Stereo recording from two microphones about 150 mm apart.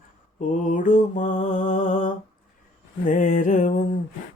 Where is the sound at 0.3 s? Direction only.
55° left (ahead or behind).